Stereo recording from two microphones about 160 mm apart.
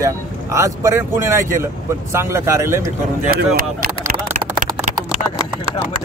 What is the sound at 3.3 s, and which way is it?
Speech, 65° right (ahead or behind).